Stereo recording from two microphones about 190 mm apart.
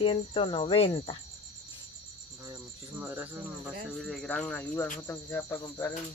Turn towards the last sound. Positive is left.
turn(degrees=15)  # may be behind; listen again after turning